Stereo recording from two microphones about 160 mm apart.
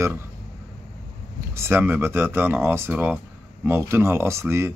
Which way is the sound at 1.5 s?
15° right (ahead or behind).